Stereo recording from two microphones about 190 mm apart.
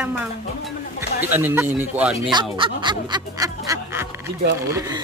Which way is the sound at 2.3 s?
25° right (ahead or behind).